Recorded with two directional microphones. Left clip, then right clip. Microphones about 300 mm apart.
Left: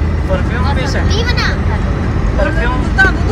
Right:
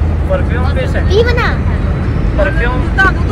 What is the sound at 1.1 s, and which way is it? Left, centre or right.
Speech, centre.